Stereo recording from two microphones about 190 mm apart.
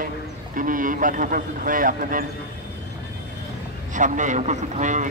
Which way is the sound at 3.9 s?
40° right (ahead or behind).